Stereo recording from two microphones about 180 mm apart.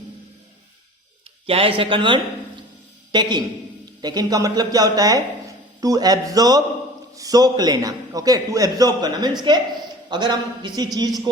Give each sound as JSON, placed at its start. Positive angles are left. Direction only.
{"t": 1.5, "sound": "speech", "side_deg": -30}